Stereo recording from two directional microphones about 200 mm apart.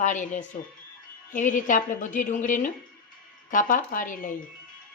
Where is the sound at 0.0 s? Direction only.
40° left (ahead or behind).